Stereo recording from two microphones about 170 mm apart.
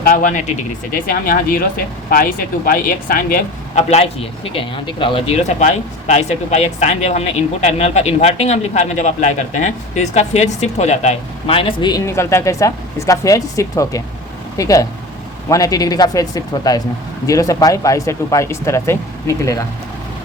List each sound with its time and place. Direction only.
0.0 s speech: 55° left (ahead or behind)
3.8 s a man's voice: 40° left (ahead or behind); by 19.6 s 20° left (ahead or behind)